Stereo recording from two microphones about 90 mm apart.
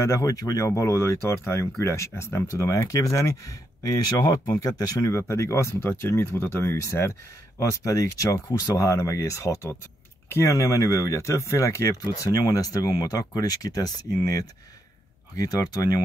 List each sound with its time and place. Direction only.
0.0 s speech: 40° left (ahead or behind)